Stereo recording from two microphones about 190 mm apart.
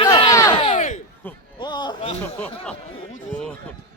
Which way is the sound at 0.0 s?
25° left (ahead or behind).